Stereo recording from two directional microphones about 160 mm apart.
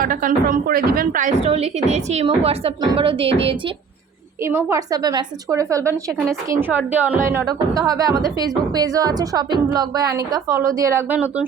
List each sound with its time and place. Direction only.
0.0 s speech: 60° right (ahead or behind)
1.5 s a woman's voice: 40° right (ahead or behind)
4.4 s a woman's voice: 15° right (ahead or behind)